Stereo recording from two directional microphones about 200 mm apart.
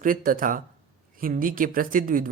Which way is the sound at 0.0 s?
45° right (ahead or behind).